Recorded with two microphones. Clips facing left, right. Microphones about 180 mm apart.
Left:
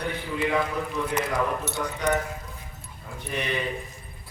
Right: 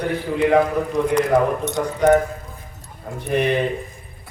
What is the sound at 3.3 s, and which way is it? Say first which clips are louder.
Speech: right 10 dB; 55° right (ahead or behind).